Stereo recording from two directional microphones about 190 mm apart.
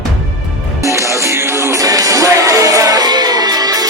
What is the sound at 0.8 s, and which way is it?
Music, 15° right (ahead or behind).